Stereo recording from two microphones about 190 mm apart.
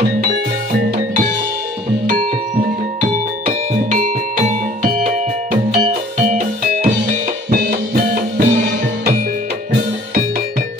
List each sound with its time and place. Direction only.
3.4 s music: 40° right (ahead or behind)
7.5 s music: 50° right (ahead or behind)